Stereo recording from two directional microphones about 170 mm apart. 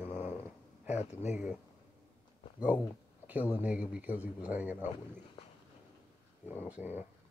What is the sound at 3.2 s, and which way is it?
Speech, 10° right (ahead or behind).